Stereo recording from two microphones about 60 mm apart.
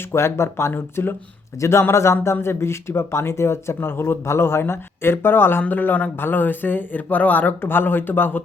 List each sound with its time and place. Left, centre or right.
0.1 s speech: left
0.7 s speech: left
1.8 s speech: left